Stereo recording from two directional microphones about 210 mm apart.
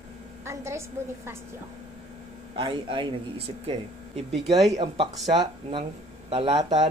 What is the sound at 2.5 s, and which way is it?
Speech, 25° right (ahead or behind).